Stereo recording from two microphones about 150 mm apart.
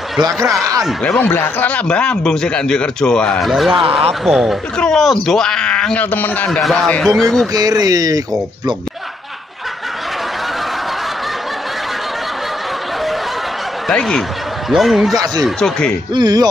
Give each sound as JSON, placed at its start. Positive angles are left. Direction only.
{"t": 0.8, "sound": "speech", "side_deg": 5}
{"t": 7.5, "sound": "speech", "side_deg": -25}
{"t": 13.8, "sound": "speech", "side_deg": 0}
{"t": 16.1, "sound": "speech", "side_deg": -30}